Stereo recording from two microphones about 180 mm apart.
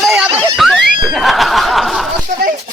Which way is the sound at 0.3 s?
30° right (ahead or behind).